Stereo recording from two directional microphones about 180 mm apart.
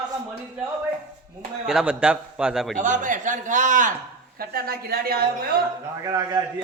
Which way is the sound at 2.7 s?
45° right (ahead or behind).